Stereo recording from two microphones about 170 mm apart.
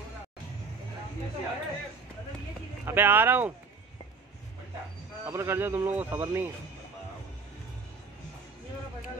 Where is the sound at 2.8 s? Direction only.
10° right (ahead or behind).